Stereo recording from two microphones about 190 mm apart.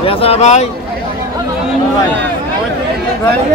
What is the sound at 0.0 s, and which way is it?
Speech, 30° left (ahead or behind).